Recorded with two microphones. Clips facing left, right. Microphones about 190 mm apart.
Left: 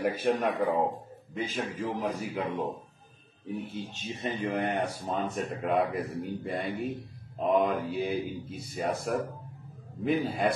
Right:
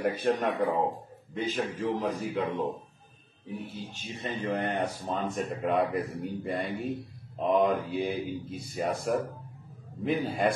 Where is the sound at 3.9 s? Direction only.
20° left (ahead or behind).